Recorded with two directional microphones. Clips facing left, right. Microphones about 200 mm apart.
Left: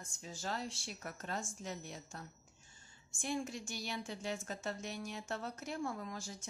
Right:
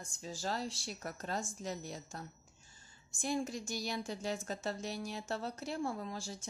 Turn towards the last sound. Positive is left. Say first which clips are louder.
# right 3 dB
turn(degrees=-30)  # may be behind; listen again after turning